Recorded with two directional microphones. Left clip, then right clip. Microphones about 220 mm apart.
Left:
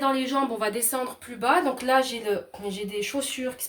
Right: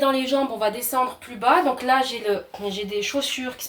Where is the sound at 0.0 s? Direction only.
15° left (ahead or behind).